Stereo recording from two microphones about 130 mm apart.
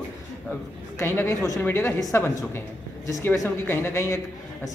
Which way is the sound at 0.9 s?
20° left (ahead or behind).